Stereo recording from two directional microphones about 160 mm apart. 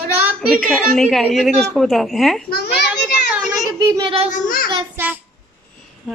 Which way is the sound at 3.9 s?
30° right (ahead or behind).